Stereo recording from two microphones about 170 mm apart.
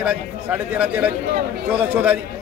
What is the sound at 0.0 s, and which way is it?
Speech, 10° right (ahead or behind).